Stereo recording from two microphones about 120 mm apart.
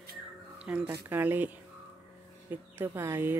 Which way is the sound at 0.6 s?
10° right (ahead or behind).